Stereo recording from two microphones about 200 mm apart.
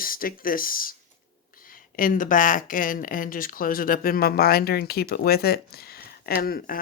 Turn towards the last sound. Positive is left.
turn(degrees=50)  # may be behind; listen again after turning